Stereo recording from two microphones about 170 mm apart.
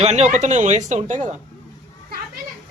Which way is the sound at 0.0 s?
40° right (ahead or behind).